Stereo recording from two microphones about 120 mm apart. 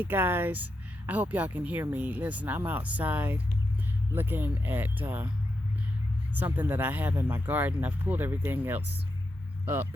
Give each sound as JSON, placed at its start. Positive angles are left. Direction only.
{"t": 0.0, "sound": "speech", "side_deg": -15}
{"t": 6.3, "sound": "speech", "side_deg": -15}